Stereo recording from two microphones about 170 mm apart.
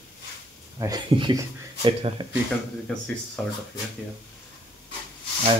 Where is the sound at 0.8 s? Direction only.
25° right (ahead or behind).